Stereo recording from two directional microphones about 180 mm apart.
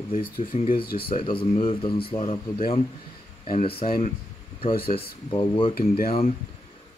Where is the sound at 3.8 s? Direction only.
50° left (ahead or behind).